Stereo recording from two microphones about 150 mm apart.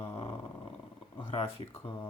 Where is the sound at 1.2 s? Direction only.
40° left (ahead or behind).